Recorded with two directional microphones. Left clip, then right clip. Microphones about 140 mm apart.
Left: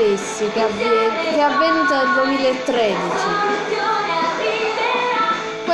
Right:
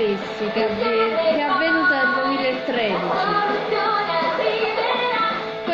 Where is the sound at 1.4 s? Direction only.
20° left (ahead or behind).